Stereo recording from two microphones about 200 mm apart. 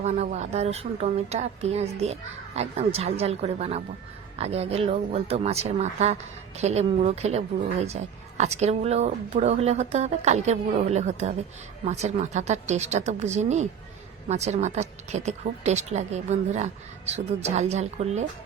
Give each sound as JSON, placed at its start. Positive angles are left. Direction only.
{"t": 0.0, "sound": "a woman's voice", "side_deg": -35}